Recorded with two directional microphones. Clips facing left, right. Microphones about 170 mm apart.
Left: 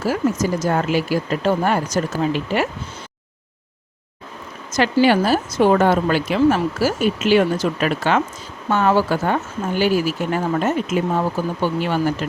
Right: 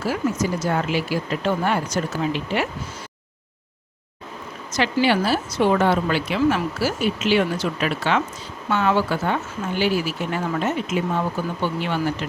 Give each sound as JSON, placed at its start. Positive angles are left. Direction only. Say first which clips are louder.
{"t": 0.6, "sound": "speech", "louder": "left 3 dB", "side_deg": 45}
{"t": 5.0, "sound": "speech", "louder": "left 4 dB", "side_deg": 45}